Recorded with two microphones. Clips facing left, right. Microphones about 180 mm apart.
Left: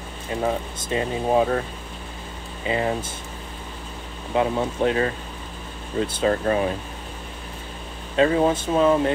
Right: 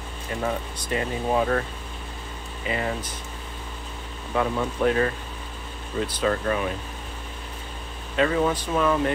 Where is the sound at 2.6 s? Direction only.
25° left (ahead or behind).